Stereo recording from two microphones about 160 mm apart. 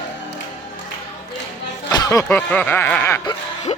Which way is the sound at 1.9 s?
20° left (ahead or behind).